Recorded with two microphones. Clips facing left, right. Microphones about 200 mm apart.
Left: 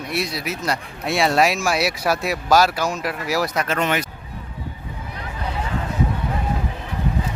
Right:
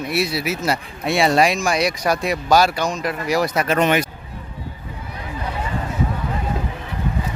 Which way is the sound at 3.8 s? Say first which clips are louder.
Right 5 dB; 20° right (ahead or behind).